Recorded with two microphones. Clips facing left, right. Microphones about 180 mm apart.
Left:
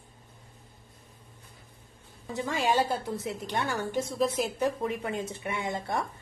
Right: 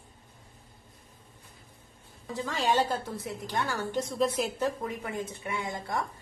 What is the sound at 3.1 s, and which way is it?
Speech, 25° left (ahead or behind).